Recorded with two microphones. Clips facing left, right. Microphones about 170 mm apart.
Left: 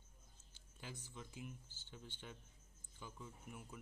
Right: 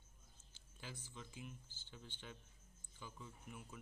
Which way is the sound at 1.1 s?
10° left (ahead or behind).